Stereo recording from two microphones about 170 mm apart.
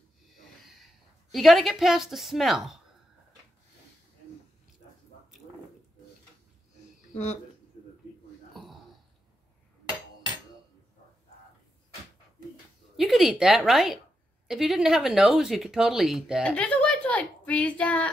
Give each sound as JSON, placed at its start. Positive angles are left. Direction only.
{"t": 1.3, "sound": "speech", "side_deg": 0}
{"t": 12.9, "sound": "a woman's voice", "side_deg": 0}
{"t": 16.5, "sound": "a woman's voice", "side_deg": 10}